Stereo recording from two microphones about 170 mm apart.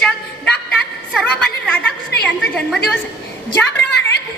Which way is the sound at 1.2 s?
5° left (ahead or behind).